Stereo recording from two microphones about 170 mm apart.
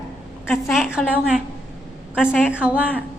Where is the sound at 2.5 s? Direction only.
10° right (ahead or behind).